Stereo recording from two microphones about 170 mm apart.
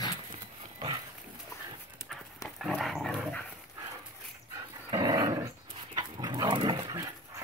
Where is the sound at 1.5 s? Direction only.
20° left (ahead or behind).